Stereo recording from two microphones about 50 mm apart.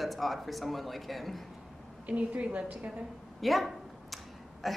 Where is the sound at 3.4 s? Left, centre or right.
Centre.